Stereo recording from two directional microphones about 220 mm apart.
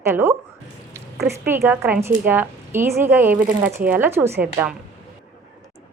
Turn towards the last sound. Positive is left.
turn(degrees=-10)  # may be behind; listen again after turning